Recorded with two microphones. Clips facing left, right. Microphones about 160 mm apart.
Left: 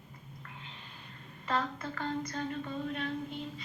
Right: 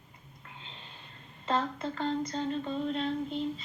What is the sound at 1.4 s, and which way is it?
Music, 25° right (ahead or behind).